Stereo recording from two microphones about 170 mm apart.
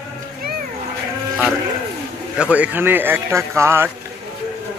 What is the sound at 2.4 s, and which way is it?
Speech, 10° right (ahead or behind).